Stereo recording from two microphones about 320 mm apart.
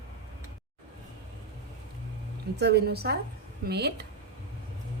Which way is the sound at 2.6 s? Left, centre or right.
Right.